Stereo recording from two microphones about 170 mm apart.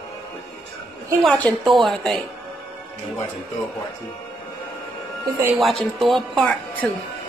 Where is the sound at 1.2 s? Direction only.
5° left (ahead or behind).